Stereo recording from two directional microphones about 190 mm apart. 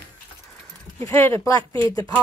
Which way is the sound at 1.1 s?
15° left (ahead or behind).